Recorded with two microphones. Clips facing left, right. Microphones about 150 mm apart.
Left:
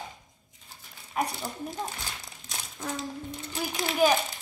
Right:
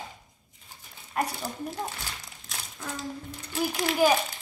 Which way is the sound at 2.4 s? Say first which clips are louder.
Left 3 dB; 20° left (ahead or behind).